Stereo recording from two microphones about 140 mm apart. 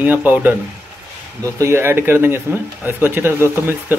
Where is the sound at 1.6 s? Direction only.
15° right (ahead or behind).